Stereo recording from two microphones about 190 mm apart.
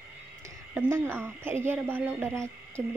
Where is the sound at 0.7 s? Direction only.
10° right (ahead or behind).